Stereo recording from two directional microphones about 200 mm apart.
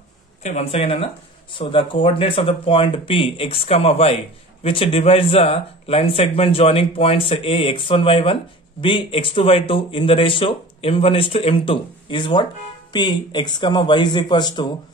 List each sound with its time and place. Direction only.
0.4 s speech: 35° left (ahead or behind)